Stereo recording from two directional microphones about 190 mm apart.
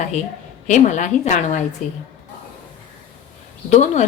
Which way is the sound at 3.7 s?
35° left (ahead or behind).